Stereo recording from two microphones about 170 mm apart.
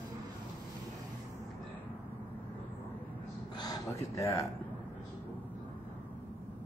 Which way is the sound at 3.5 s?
25° left (ahead or behind).